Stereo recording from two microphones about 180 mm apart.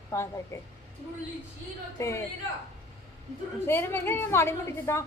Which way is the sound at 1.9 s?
15° left (ahead or behind).